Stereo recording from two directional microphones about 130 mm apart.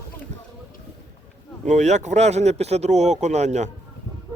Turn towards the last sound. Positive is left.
turn(degrees=-60)  # may be behind; listen again after turning